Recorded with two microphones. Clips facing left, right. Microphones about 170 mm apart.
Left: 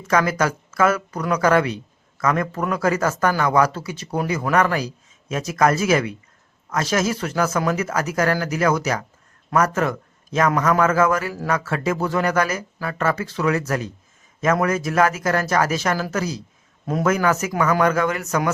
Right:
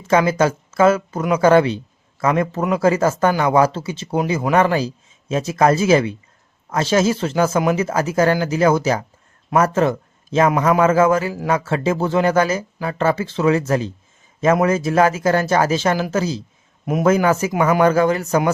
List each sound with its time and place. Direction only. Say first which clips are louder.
0.1 s a man's voice: right 4 dB; 25° right (ahead or behind)
17.1 s speech: right 5 dB; 30° right (ahead or behind)